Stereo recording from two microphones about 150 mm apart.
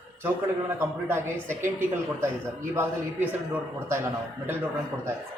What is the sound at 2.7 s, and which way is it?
Speech, 15° right (ahead or behind).